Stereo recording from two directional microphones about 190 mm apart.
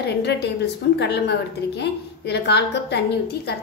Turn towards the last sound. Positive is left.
turn(degrees=60)  # may be behind; listen again after turning